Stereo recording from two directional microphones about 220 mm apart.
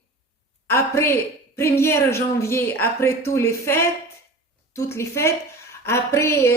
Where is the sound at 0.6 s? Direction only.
10° left (ahead or behind).